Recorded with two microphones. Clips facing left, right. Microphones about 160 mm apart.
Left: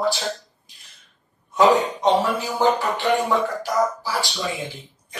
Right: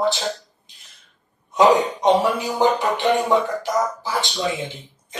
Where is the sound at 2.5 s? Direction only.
20° right (ahead or behind).